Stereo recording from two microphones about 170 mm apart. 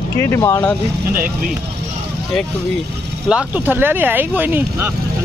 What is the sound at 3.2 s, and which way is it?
Speech, 10° right (ahead or behind).